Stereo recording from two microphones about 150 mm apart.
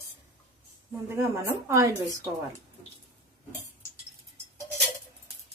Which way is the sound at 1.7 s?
20° right (ahead or behind).